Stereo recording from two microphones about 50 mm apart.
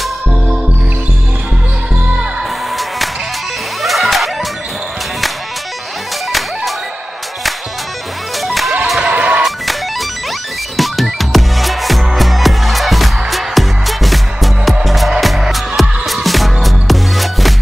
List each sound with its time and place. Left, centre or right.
3.8 s music: centre
8.4 s music: centre
9.0 s music: right
9.4 s music: centre